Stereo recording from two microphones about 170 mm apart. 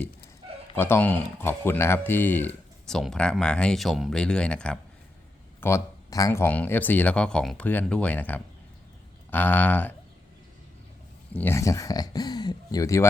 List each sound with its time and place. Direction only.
0.8 s speech: 15° left (ahead or behind)
11.3 s speech: 15° left (ahead or behind)